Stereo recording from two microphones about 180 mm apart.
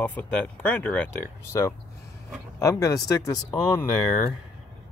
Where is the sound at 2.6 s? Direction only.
20° left (ahead or behind).